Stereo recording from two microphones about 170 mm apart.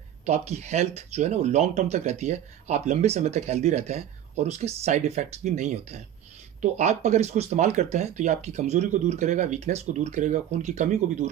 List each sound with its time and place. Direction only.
0.2 s speech: 40° right (ahead or behind)